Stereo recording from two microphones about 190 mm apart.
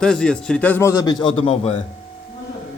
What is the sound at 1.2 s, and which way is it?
Speech, 30° left (ahead or behind).